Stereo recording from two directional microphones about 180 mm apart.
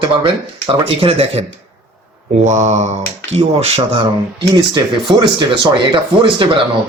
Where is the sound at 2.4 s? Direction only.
40° right (ahead or behind); by 6.4 s 25° right (ahead or behind).